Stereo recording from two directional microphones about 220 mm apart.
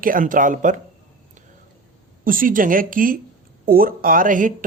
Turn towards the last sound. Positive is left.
turn(degrees=-35)  # may be behind; listen again after turning